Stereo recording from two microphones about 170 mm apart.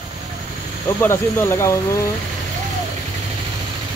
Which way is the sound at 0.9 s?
15° left (ahead or behind).